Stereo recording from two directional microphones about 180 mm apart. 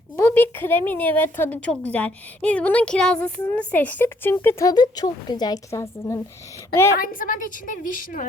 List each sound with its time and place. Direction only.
0.2 s speech: 10° left (ahead or behind)
7.0 s a woman's voice: 50° left (ahead or behind)